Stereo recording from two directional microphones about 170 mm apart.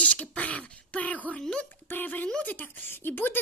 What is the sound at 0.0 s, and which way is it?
A child's voice, 10° left (ahead or behind).